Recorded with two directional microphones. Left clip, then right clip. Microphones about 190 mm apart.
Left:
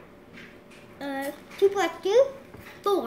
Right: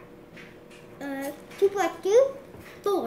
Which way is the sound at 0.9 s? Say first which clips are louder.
Left 2 dB; centre (ahead or behind).